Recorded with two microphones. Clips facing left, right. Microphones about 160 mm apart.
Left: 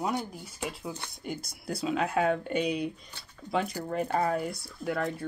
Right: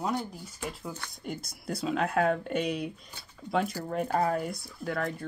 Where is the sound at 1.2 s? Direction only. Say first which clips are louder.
Even; centre (ahead or behind).